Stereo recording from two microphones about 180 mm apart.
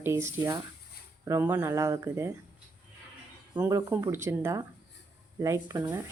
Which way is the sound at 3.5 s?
15° right (ahead or behind).